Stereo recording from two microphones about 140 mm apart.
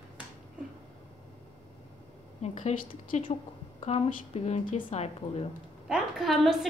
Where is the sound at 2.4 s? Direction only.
50° left (ahead or behind).